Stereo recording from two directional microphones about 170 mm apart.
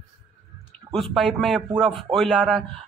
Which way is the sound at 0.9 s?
Centre (ahead or behind).